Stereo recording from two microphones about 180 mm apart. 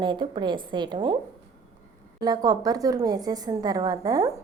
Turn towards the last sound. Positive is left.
turn(degrees=-20)  # may be behind; listen again after turning